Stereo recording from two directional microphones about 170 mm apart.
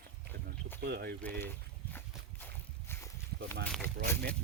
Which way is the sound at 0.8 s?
65° right (ahead or behind).